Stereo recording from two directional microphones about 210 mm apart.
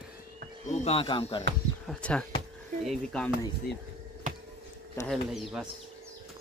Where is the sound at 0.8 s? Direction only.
25° left (ahead or behind).